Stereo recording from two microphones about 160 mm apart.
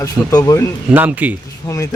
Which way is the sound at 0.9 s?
10° right (ahead or behind).